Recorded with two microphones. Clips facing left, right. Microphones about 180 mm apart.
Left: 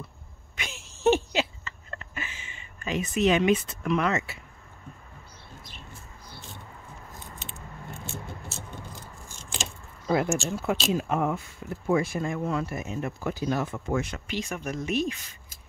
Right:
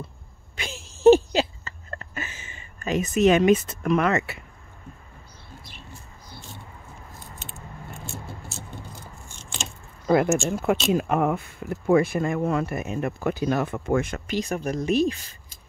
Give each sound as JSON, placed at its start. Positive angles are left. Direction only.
{"t": 0.6, "sound": "a sound", "side_deg": -35}
{"t": 7.5, "sound": "keys jangling", "side_deg": 20}
{"t": 10.0, "sound": "speech", "side_deg": -55}